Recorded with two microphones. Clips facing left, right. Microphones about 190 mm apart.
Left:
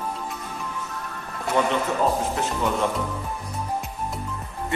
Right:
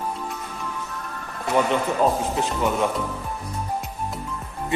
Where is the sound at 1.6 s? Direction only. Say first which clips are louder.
Right 1 dB; 10° right (ahead or behind).